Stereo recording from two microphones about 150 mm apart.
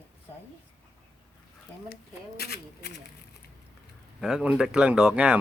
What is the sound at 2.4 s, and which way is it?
Speech, 90° left.